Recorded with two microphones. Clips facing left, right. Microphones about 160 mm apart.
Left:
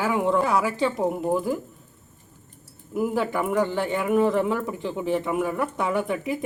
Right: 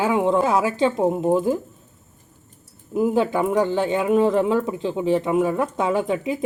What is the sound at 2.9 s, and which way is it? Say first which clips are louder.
Speech: right 5 dB; 20° right (ahead or behind).